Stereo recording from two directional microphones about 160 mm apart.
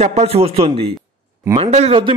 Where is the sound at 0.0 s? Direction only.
45° right (ahead or behind).